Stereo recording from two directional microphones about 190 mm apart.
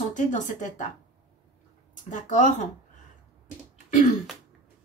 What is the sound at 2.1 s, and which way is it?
Speech, 40° left (ahead or behind).